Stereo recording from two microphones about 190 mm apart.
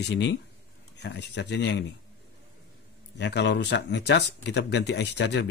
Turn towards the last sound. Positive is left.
turn(degrees=65)  # may be behind; listen again after turning